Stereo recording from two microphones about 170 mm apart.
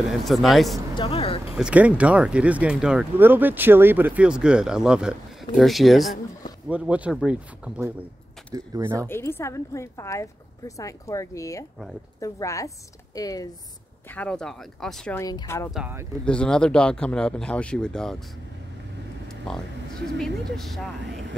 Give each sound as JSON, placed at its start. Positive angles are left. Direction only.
{"t": 0.2, "sound": "speech", "side_deg": 0}
{"t": 0.9, "sound": "speech", "side_deg": 35}
{"t": 1.5, "sound": "speech", "side_deg": -5}
{"t": 8.5, "sound": "speech", "side_deg": -20}
{"t": 9.0, "sound": "a woman's voice", "side_deg": 15}
{"t": 14.1, "sound": "speech", "side_deg": 5}
{"t": 15.1, "sound": "a woman's voice", "side_deg": 20}
{"t": 15.7, "sound": "speech", "side_deg": -10}
{"t": 16.3, "sound": "speech", "side_deg": 5}
{"t": 19.2, "sound": "a sound", "side_deg": 5}
{"t": 20.5, "sound": "speech", "side_deg": 0}
{"t": 21.0, "sound": "speech", "side_deg": -90}